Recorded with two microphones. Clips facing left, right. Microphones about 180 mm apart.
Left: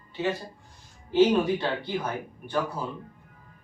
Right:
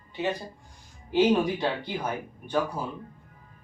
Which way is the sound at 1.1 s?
15° right (ahead or behind).